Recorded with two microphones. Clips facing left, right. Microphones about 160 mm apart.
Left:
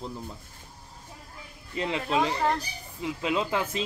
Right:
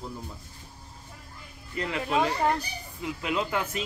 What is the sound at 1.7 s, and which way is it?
Speech, 25° left (ahead or behind).